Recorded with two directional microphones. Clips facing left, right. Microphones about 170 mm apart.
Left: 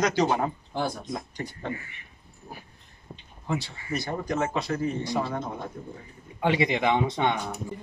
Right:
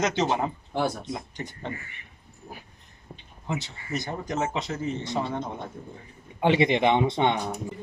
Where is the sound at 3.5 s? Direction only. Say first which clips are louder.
Left 2 dB; 20° right (ahead or behind).